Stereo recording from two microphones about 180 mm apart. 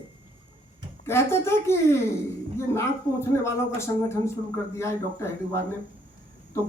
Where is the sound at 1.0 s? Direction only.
15° left (ahead or behind).